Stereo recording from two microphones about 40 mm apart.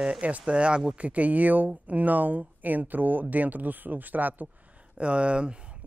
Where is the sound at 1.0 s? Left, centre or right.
Right.